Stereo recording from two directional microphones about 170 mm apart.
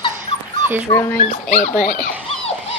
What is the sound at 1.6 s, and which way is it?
Speech, 50° left (ahead or behind).